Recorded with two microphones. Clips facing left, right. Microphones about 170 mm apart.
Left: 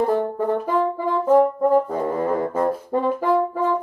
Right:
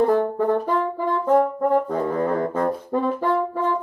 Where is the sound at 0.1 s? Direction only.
10° left (ahead or behind).